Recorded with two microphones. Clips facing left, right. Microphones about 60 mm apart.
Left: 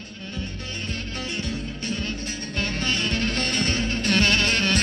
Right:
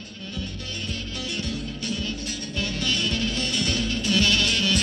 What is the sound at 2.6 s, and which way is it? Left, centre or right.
Music, left.